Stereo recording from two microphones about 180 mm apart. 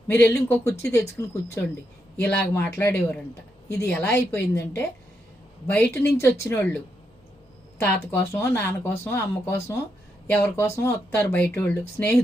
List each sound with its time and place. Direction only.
0.1 s speech: 15° left (ahead or behind)
7.8 s speech: 10° left (ahead or behind)